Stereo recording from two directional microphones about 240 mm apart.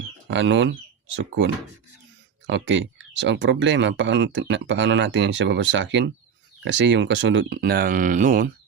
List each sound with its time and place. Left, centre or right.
0.3 s speech: right
2.5 s speech: right